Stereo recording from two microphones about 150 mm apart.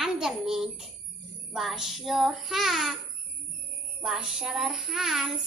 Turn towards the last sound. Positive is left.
turn(degrees=-5)  # may be behind; listen again after turning